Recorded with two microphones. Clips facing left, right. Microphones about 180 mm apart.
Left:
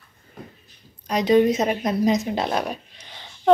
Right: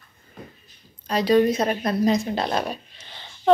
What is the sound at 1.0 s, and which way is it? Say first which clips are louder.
Speech: left 1 dB; 20° left (ahead or behind).